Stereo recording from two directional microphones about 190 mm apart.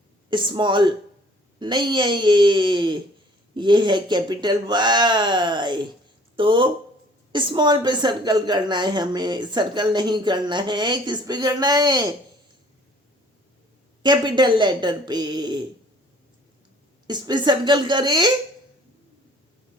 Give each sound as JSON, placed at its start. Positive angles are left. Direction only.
{"t": 0.3, "sound": "a woman's voice", "side_deg": -25}
{"t": 14.0, "sound": "a woman's voice", "side_deg": -25}
{"t": 17.1, "sound": "a woman's voice", "side_deg": -20}